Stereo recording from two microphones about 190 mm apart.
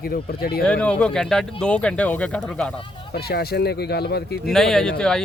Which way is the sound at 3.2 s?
55° left (ahead or behind).